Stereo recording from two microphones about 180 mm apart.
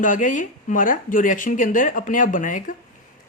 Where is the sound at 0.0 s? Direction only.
45° left (ahead or behind).